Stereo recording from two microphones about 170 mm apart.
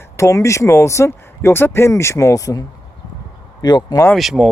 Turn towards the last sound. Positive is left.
turn(degrees=0)  # may be behind; listen again after turning